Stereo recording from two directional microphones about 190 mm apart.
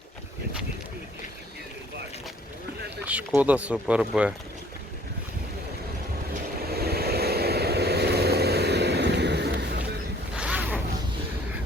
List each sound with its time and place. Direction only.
3.0 s speech: 5° right (ahead or behind)
6.7 s vehicle: 55° right (ahead or behind)
10.3 s zipper: 5° right (ahead or behind)